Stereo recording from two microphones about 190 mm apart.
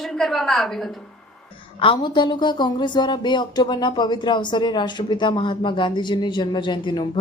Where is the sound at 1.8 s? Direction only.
25° left (ahead or behind).